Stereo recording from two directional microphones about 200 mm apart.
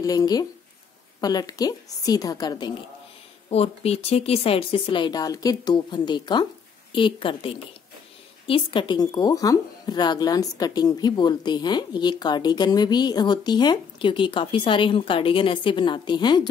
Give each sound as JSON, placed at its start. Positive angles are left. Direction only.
{"t": 0.0, "sound": "speech", "side_deg": 20}
{"t": 3.4, "sound": "speech", "side_deg": 30}